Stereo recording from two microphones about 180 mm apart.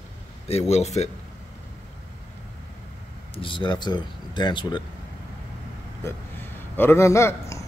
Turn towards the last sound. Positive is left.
turn(degrees=15)  # may be behind; listen again after turning